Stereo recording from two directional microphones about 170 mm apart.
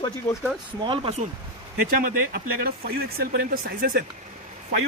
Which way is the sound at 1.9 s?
60° right (ahead or behind).